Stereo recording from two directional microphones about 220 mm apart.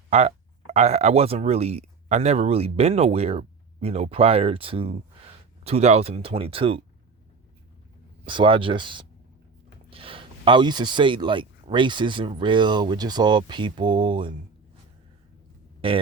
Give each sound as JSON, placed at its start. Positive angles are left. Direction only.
{"t": 0.1, "sound": "speech", "side_deg": -30}
{"t": 8.2, "sound": "speech", "side_deg": -25}
{"t": 15.8, "sound": "speech", "side_deg": -25}